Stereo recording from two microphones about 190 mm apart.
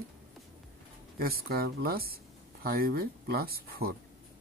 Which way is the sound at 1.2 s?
50° right (ahead or behind).